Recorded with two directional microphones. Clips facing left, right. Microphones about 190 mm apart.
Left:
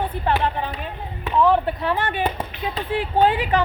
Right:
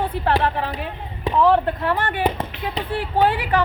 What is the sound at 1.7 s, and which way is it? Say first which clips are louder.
Speech: right 1 dB; 15° left (ahead or behind).